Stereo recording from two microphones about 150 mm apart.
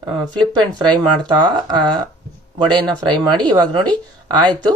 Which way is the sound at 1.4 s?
30° right (ahead or behind).